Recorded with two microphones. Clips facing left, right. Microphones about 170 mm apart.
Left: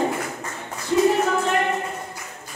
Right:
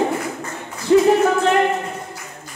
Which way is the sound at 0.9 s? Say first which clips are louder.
Right 6 dB; 70° right (ahead or behind).